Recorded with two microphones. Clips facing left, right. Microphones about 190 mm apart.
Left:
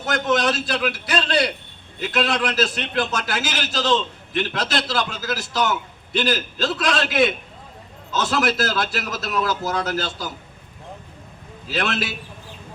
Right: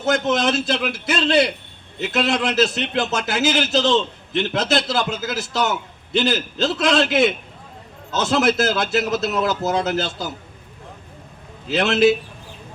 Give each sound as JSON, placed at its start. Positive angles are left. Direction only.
{"t": 0.0, "sound": "speech", "side_deg": -25}
{"t": 11.7, "sound": "speech", "side_deg": -25}